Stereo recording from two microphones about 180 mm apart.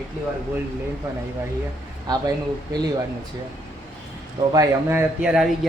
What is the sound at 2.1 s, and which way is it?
Speech, 25° right (ahead or behind).